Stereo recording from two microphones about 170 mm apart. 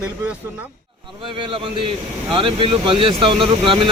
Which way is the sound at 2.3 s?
30° right (ahead or behind).